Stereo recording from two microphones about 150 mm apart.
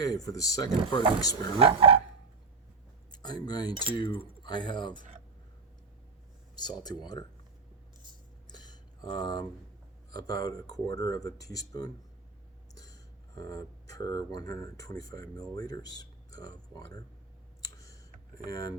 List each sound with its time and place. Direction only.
0.0 s speech: 25° left (ahead or behind)
1.5 s speech: 40° right (ahead or behind)
3.1 s speech: 30° left (ahead or behind)
6.6 s speech: 30° left (ahead or behind)
8.4 s a sound: 30° left (ahead or behind)
10.1 s speech: 25° left (ahead or behind)
17.6 s clicking: 25° left (ahead or behind)
18.4 s speech: 25° left (ahead or behind)